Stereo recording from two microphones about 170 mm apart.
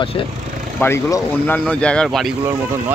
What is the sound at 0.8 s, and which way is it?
Speech, 15° left (ahead or behind).